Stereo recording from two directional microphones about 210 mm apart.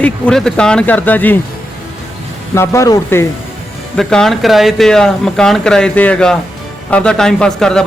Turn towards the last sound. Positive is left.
turn(degrees=5)  # may be behind; listen again after turning